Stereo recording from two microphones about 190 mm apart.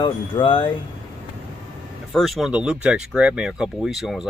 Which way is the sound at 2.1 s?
Centre (ahead or behind).